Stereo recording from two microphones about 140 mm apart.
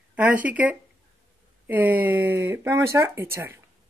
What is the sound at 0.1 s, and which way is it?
Speech, 10° right (ahead or behind).